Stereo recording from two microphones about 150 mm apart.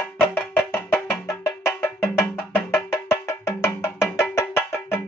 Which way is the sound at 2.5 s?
15° left (ahead or behind).